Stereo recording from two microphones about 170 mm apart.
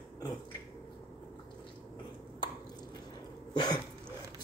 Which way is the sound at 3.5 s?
25° left (ahead or behind).